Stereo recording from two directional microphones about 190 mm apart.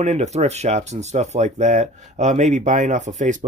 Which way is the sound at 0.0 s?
35° right (ahead or behind).